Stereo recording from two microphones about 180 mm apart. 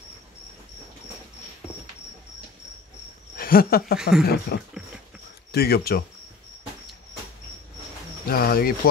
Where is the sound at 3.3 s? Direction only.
55° left (ahead or behind).